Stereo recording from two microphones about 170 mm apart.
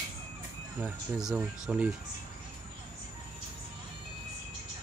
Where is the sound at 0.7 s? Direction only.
5° right (ahead or behind).